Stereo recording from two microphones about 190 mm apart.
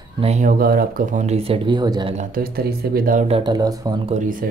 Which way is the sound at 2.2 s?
50° right (ahead or behind).